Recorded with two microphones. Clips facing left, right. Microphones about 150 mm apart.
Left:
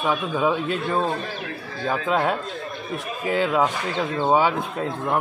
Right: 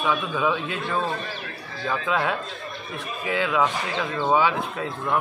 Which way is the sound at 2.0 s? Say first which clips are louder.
Left 3 dB; 45° left (ahead or behind).